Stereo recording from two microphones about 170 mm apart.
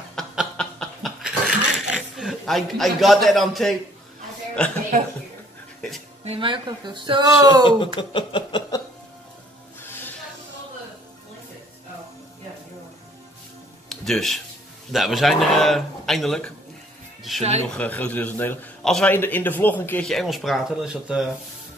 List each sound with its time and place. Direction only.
0.1 s laughter: 5° left (ahead or behind)
4.6 s speech: 5° left (ahead or behind)
6.2 s speech: 30° right (ahead or behind)
7.6 s speech: 30° left (ahead or behind)
13.8 s music: centre (ahead or behind)
14.9 s speech: centre (ahead or behind)
17.4 s speech: 40° right (ahead or behind)
17.6 s a man's voice: 10° left (ahead or behind)